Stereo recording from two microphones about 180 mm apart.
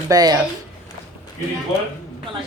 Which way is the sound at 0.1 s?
20° right (ahead or behind).